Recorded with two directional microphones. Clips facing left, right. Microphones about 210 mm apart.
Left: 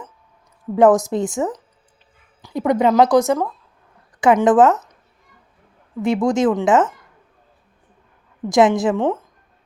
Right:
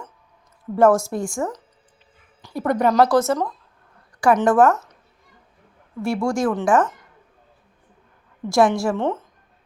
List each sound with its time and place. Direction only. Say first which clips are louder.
0.8 s speech: left 3 dB; 15° left (ahead or behind)
6.0 s speech: left 4 dB; 20° left (ahead or behind)
8.4 s speech: left 3 dB; 20° left (ahead or behind)